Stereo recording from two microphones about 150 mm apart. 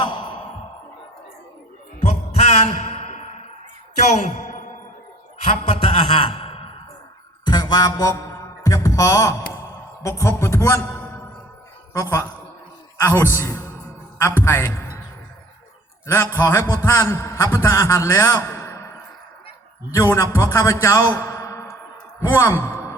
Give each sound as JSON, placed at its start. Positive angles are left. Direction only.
{"t": 2.0, "sound": "music", "side_deg": 45}
{"t": 5.5, "sound": "a sound", "side_deg": 40}
{"t": 7.4, "sound": "mantra", "side_deg": 25}
{"t": 10.0, "sound": "a man's voice", "side_deg": 20}
{"t": 16.1, "sound": "a man's voice", "side_deg": 15}
{"t": 20.0, "sound": "a man's voice", "side_deg": 15}